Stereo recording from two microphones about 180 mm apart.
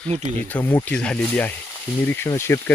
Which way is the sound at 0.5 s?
15° left (ahead or behind).